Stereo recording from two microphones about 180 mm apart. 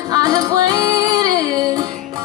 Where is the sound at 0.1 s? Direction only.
20° right (ahead or behind).